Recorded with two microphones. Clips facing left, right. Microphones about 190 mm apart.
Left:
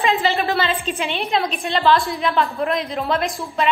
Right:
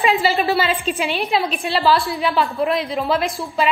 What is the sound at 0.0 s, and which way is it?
A woman's voice, 10° right (ahead or behind).